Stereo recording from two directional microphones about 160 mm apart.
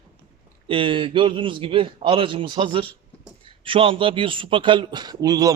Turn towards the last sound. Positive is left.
turn(degrees=-25)  # may be behind; listen again after turning